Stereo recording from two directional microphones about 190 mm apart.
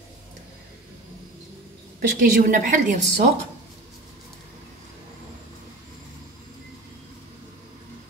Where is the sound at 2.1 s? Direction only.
45° right (ahead or behind).